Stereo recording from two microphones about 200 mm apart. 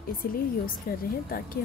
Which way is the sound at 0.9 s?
50° left (ahead or behind).